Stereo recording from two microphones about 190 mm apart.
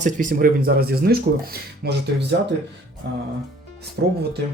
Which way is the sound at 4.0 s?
60° right (ahead or behind).